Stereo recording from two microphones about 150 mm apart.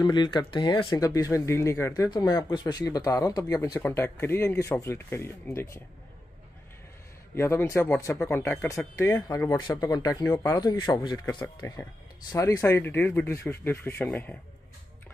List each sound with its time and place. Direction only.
0.0 s speech: 30° left (ahead or behind); by 5.8 s 15° left (ahead or behind)
7.3 s speech: 15° left (ahead or behind)